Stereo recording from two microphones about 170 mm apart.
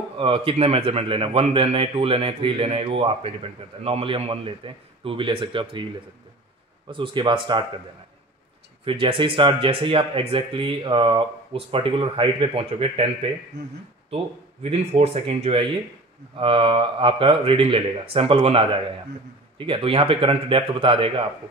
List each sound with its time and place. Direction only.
0.2 s speech: 30° right (ahead or behind)
6.9 s speech: 30° right (ahead or behind)
8.8 s speech: 30° right (ahead or behind)